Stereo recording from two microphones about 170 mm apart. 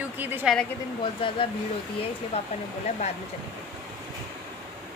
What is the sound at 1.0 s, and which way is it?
Speech, 30° left (ahead or behind).